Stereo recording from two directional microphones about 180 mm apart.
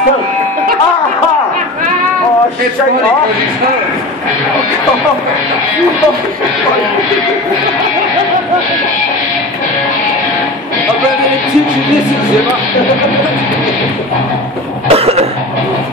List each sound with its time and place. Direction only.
14.9 s cough: 35° right (ahead or behind)